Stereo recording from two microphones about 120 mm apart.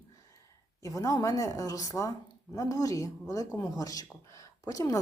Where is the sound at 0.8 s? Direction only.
30° left (ahead or behind).